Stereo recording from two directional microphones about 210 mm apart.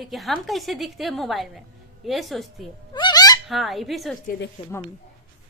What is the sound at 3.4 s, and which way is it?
Speech, centre (ahead or behind).